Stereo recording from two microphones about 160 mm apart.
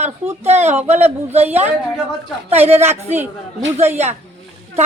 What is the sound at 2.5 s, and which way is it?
Speech, 40° right (ahead or behind).